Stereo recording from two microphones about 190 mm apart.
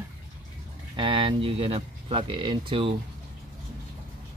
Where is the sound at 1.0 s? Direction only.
25° right (ahead or behind).